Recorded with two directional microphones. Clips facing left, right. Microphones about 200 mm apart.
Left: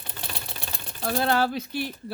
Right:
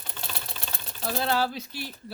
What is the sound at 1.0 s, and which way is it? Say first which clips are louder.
Speech: left 3 dB; 55° left (ahead or behind).